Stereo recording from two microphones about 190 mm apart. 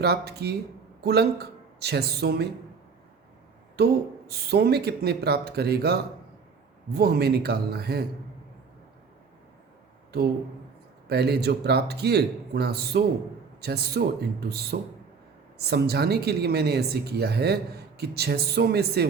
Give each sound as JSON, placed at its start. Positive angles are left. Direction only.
{"t": 0.0, "sound": "speech", "side_deg": -60}
{"t": 3.8, "sound": "speech", "side_deg": -55}
{"t": 11.1, "sound": "speech", "side_deg": -60}